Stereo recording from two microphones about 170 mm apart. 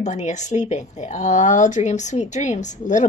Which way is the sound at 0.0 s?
45° left (ahead or behind).